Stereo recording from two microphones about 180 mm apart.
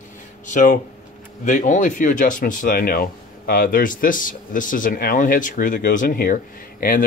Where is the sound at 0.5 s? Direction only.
45° left (ahead or behind).